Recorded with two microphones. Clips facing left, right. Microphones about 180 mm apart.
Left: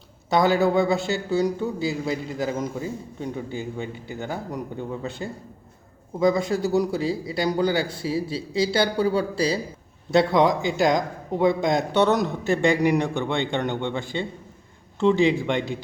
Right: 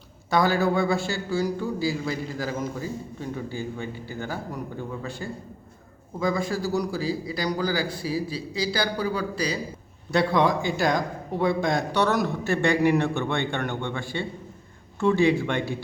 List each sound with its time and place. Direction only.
0.3 s a man's voice: 20° left (ahead or behind)